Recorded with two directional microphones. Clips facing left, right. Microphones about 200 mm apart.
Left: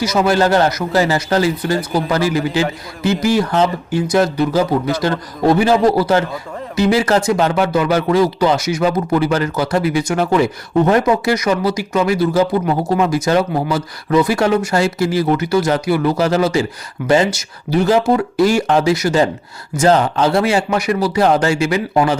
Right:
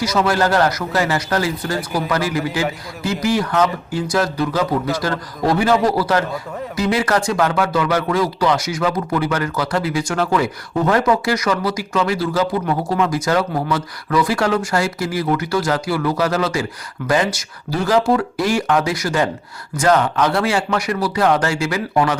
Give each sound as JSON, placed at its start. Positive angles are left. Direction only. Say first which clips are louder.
{"t": 0.3, "sound": "speech", "louder": "left 4 dB", "side_deg": 25}